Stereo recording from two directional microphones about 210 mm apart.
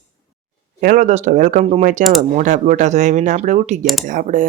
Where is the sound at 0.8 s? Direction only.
40° right (ahead or behind).